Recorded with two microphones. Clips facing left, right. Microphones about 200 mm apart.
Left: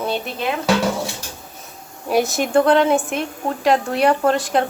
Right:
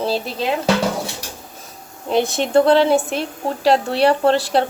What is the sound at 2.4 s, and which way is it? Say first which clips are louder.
A woman's voice: right 2 dB; 30° right (ahead or behind).